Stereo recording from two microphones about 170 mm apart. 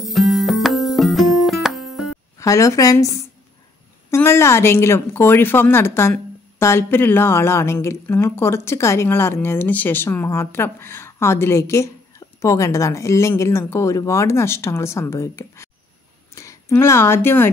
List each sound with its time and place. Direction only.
0.0 s music: centre (ahead or behind)
2.3 s a woman's voice: 20° left (ahead or behind)